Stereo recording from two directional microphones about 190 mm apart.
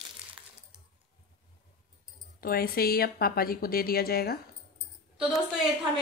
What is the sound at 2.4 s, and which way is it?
Speech, 50° left (ahead or behind).